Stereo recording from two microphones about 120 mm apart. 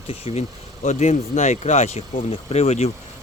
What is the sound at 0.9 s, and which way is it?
Speech, 85° left.